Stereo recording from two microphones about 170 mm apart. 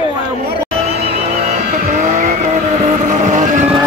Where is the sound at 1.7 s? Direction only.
50° right (ahead or behind).